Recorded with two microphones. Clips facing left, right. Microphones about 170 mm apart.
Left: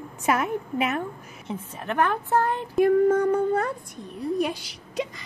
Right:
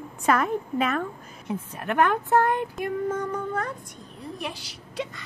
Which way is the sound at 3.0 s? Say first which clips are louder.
Left 8 dB; 60° left (ahead or behind).